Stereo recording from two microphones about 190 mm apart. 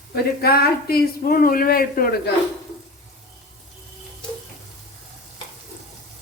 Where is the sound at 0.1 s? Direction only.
55° left (ahead or behind).